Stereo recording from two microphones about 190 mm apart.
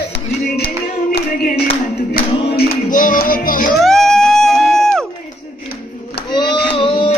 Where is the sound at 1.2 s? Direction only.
55° left (ahead or behind).